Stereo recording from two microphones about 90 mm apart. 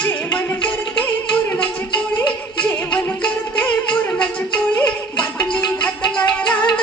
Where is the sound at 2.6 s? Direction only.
10° left (ahead or behind).